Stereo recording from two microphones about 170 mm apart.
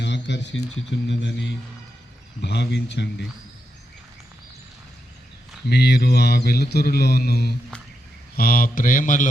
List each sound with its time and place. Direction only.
0.0 s speech: 90° left
5.6 s mantra: 75° left (ahead or behind)
7.7 s a sound: 5° left (ahead or behind)
8.4 s mantra: 60° left (ahead or behind)